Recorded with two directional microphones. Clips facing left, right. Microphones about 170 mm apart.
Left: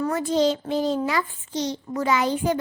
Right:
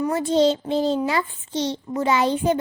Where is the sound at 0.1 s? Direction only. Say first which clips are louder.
Right 4 dB; 25° right (ahead or behind).